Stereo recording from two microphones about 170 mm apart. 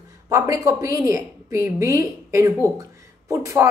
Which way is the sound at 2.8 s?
20° right (ahead or behind).